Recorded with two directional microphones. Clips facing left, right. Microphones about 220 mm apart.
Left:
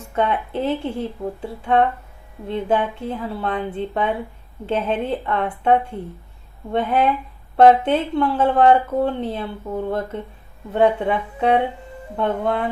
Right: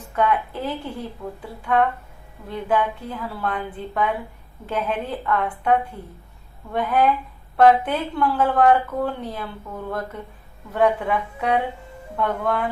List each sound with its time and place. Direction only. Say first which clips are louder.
0.2 s speech: left 1 dB; 25° left (ahead or behind)